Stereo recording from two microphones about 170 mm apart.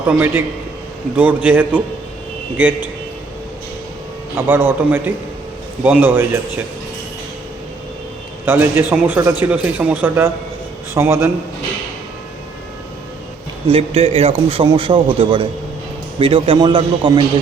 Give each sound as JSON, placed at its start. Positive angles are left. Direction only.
{"t": 0.1, "sound": "speech", "side_deg": -10}
{"t": 4.4, "sound": "speech", "side_deg": -10}
{"t": 8.4, "sound": "speech", "side_deg": -10}
{"t": 13.7, "sound": "a man's voice", "side_deg": -35}